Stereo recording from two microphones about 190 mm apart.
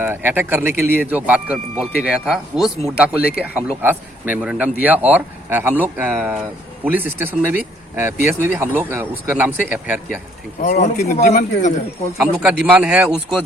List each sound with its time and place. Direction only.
0.0 s speech: 10° right (ahead or behind)
10.6 s a man's voice: 45° left (ahead or behind)
12.1 s speech: 5° right (ahead or behind)